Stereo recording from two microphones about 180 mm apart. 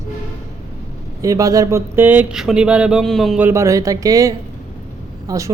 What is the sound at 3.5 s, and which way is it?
A woman's voice, 15° right (ahead or behind).